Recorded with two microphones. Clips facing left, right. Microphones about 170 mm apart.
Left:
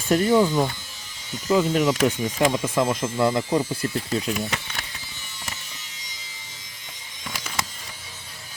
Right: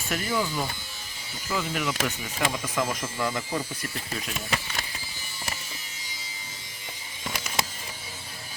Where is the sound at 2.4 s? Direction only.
25° left (ahead or behind).